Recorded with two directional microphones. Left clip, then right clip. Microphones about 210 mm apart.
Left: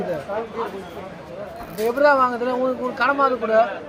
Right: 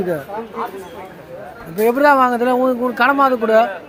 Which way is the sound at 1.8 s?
60° right (ahead or behind).